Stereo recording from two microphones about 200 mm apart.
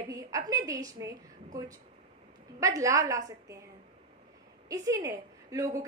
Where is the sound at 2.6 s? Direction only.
15° right (ahead or behind).